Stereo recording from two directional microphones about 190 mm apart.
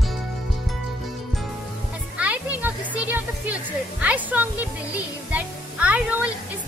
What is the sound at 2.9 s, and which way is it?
A woman's voice, 10° right (ahead or behind).